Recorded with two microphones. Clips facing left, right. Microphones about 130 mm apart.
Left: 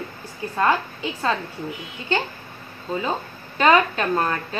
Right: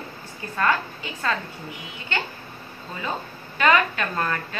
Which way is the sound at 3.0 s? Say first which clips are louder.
Left 2 dB; 25° left (ahead or behind).